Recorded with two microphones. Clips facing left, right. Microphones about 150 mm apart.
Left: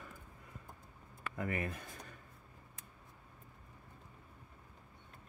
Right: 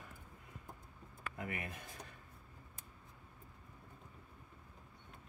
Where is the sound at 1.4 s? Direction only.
45° left (ahead or behind).